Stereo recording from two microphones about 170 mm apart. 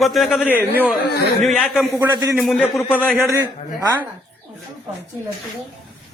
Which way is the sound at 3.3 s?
20° right (ahead or behind).